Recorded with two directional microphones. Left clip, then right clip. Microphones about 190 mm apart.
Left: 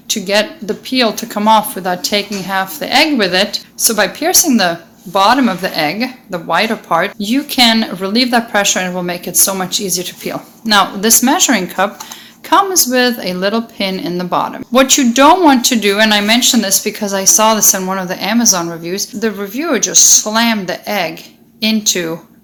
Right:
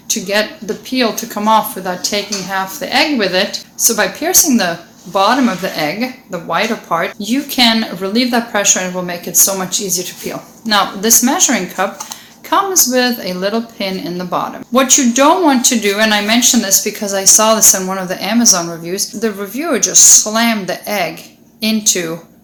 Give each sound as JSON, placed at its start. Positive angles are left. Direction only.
{"t": 0.1, "sound": "a woman's voice", "side_deg": 45}